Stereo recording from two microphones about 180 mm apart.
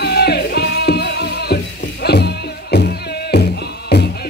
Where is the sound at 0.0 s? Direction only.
65° left (ahead or behind).